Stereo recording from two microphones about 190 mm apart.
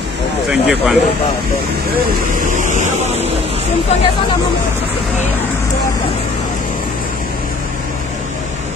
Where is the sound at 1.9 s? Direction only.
45° right (ahead or behind).